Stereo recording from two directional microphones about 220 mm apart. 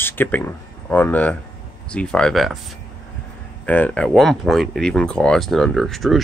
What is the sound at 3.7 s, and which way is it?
Speech, 5° left (ahead or behind).